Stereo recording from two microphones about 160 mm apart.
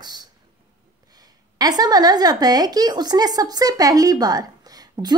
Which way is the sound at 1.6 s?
25° right (ahead or behind).